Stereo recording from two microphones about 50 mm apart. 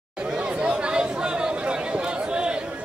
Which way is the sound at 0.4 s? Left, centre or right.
Right.